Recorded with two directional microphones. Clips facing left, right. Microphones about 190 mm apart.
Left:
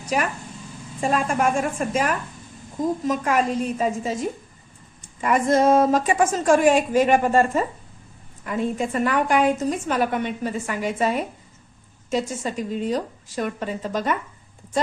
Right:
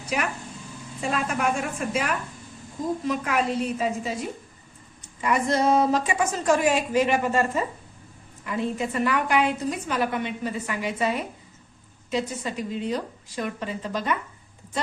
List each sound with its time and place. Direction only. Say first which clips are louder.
0.0 s a woman's voice: left 4 dB; 45° left (ahead or behind)